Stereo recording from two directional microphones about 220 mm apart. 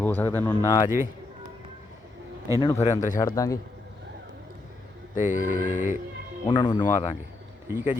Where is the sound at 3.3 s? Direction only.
15° left (ahead or behind).